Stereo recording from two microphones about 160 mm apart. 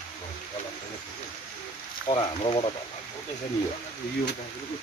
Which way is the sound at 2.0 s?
35° left (ahead or behind).